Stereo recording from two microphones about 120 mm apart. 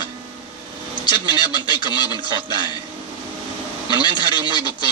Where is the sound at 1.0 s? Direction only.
40° left (ahead or behind).